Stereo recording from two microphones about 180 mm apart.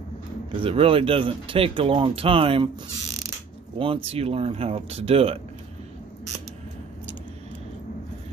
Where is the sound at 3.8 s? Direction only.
30° right (ahead or behind).